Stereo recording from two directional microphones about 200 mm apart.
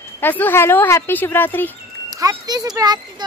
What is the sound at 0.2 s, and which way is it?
Speech, 10° left (ahead or behind).